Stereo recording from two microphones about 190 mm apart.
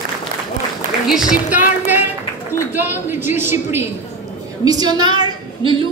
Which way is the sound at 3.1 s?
10° right (ahead or behind).